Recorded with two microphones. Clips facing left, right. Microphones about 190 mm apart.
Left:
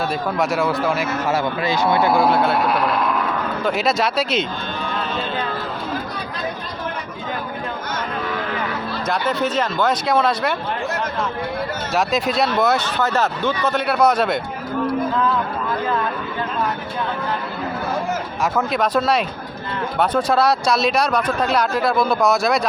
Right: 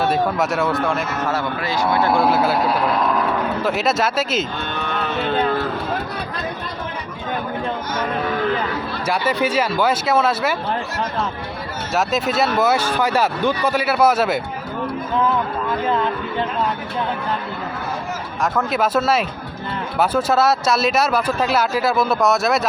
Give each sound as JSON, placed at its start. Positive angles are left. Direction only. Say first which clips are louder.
{"t": 0.1, "sound": "speech", "louder": "right 2 dB", "side_deg": 0}
{"t": 2.1, "sound": "speech", "louder": "even", "side_deg": 0}
{"t": 3.6, "sound": "speech", "louder": "left 2 dB", "side_deg": 0}
{"t": 4.8, "sound": "a sound", "louder": "right 2 dB", "side_deg": -65}
{"t": 9.0, "sound": "speech", "louder": "right 1 dB", "side_deg": -10}
{"t": 11.9, "sound": "speech", "louder": "even", "side_deg": 0}
{"t": 18.5, "sound": "speech", "louder": "even", "side_deg": -5}